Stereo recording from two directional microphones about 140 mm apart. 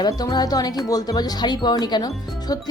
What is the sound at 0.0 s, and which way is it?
Speech, 30° left (ahead or behind).